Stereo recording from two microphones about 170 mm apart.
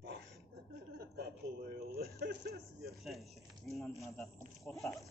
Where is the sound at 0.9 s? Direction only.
70° right (ahead or behind).